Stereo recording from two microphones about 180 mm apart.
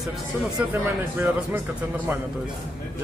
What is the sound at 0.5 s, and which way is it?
Speech, 10° right (ahead or behind).